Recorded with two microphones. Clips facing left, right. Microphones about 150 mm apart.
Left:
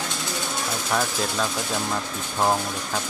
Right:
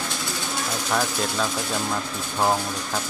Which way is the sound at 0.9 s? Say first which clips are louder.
Even; centre (ahead or behind).